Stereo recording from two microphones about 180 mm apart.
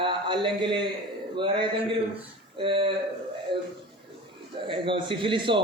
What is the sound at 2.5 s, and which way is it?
Speech, 30° right (ahead or behind).